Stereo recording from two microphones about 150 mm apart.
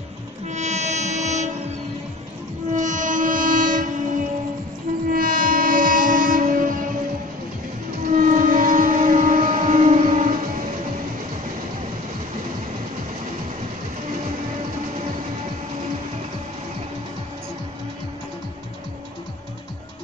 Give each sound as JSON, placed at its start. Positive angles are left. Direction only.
{"t": 0.5, "sound": "train", "side_deg": -50}
{"t": 2.7, "sound": "train", "side_deg": -60}
{"t": 8.1, "sound": "music", "side_deg": -60}